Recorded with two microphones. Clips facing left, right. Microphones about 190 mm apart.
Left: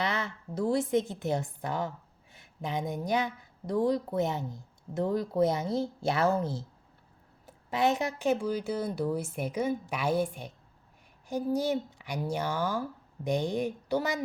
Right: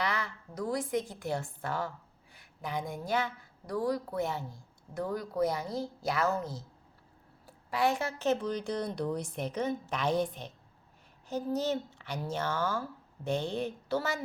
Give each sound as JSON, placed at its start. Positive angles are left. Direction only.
{"t": 0.0, "sound": "a woman's voice", "side_deg": 25}